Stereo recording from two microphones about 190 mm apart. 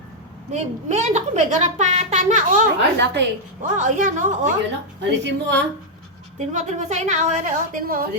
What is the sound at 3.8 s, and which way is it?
Speech, 40° right (ahead or behind).